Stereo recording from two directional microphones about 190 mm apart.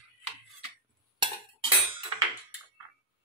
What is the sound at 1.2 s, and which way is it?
Cutlery, 25° right (ahead or behind).